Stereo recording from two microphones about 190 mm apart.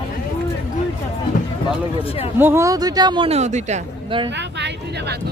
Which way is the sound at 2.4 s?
10° right (ahead or behind).